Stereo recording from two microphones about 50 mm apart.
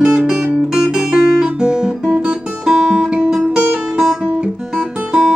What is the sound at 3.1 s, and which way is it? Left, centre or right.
Guitar, centre.